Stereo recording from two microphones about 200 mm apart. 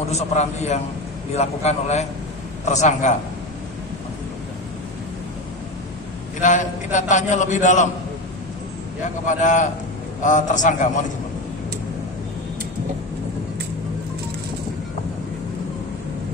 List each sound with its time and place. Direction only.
0.1 s a man's voice: 35° left (ahead or behind)
6.4 s a man's voice: 40° left (ahead or behind)
9.2 s a man's voice: 40° left (ahead or behind)